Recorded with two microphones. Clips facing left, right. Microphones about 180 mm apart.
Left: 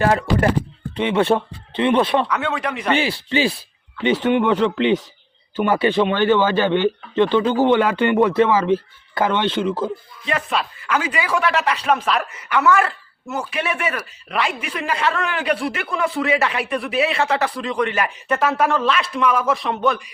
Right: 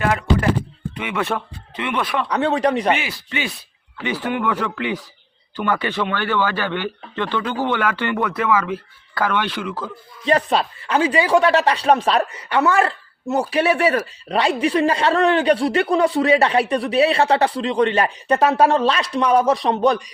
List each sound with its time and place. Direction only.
0.0 s music: 35° left (ahead or behind)
0.9 s speech: 30° left (ahead or behind)
2.3 s speech: 35° right (ahead or behind)
2.9 s speech: 30° left (ahead or behind)
10.2 s speech: 35° right (ahead or behind)